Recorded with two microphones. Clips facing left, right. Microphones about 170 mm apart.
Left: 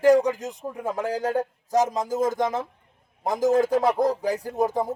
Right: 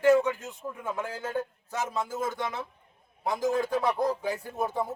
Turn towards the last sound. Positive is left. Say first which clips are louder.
# left 6 dB
turn(degrees=40)  # may be behind; listen again after turning